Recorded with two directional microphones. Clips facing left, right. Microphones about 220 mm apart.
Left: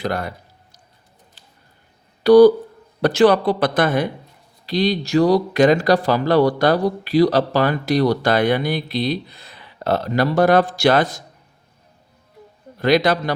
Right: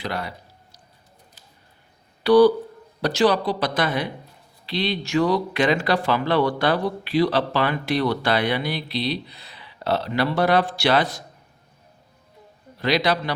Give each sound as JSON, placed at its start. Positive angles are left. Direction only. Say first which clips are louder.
{"t": 0.0, "sound": "speech", "louder": "left 5 dB", "side_deg": 45}
{"t": 2.2, "sound": "speech", "louder": "left 5 dB", "side_deg": 45}
{"t": 3.0, "sound": "speech", "louder": "left 5 dB", "side_deg": 55}
{"t": 12.8, "sound": "speech", "louder": "left 5 dB", "side_deg": 50}